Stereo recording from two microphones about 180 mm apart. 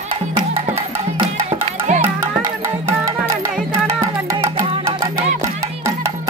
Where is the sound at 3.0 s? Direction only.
15° right (ahead or behind).